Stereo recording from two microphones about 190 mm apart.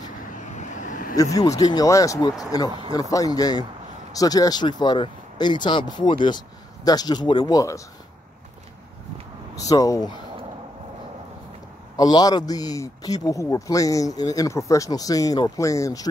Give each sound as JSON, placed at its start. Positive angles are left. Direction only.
{"t": 0.4, "sound": "vehicle", "side_deg": 40}
{"t": 1.1, "sound": "speech", "side_deg": 20}
{"t": 2.7, "sound": "speech", "side_deg": -25}
{"t": 3.0, "sound": "speech", "side_deg": 20}
{"t": 9.6, "sound": "speech", "side_deg": 20}
{"t": 12.0, "sound": "speech", "side_deg": 20}